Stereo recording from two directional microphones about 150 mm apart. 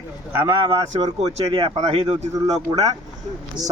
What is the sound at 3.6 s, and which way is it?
Speech, 25° right (ahead or behind).